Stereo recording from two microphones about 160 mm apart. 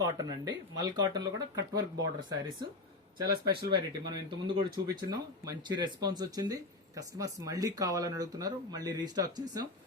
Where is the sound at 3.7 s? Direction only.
25° right (ahead or behind).